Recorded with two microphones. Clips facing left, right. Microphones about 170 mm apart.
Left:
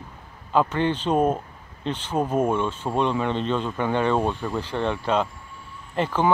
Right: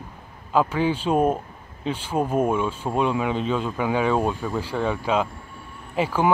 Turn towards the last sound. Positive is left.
turn(degrees=-10)  # may be behind; listen again after turning